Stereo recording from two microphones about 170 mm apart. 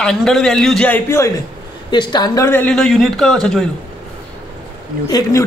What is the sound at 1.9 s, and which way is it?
Speech, 25° left (ahead or behind).